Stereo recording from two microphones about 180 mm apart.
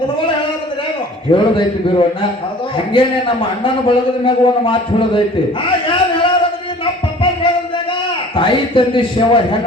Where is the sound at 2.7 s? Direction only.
30° left (ahead or behind).